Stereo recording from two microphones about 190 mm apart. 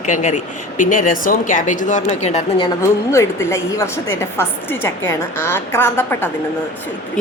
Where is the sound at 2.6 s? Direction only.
15° left (ahead or behind).